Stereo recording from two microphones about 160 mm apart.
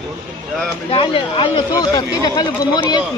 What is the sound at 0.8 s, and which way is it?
Speech, 35° left (ahead or behind).